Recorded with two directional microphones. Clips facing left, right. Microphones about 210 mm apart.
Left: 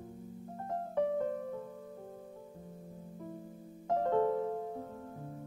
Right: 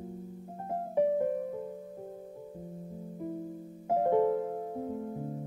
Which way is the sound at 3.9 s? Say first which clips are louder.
Right 4 dB; 15° right (ahead or behind).